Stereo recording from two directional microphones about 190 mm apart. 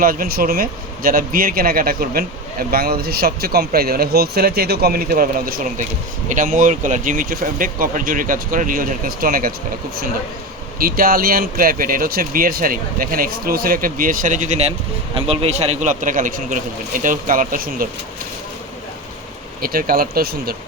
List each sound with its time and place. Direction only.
0.0 s a man's voice: 50° right (ahead or behind)
10.8 s a man's voice: 50° right (ahead or behind)
19.6 s a man's voice: 50° right (ahead or behind)